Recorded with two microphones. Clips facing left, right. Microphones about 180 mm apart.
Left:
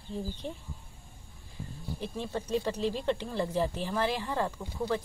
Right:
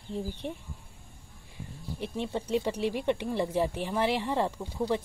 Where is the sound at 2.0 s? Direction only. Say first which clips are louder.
Right 3 dB; 20° right (ahead or behind).